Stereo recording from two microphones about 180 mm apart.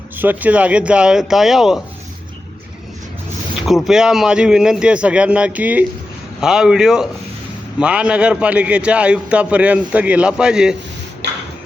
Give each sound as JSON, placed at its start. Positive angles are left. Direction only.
{"t": 0.2, "sound": "a man's voice", "side_deg": -10}
{"t": 3.7, "sound": "a man's voice", "side_deg": 0}
{"t": 11.2, "sound": "a sound", "side_deg": -70}